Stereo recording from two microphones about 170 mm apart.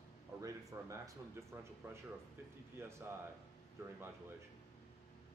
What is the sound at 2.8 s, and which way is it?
Speech, 15° right (ahead or behind).